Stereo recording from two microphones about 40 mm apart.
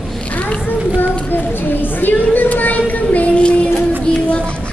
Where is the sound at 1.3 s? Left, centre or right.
Left.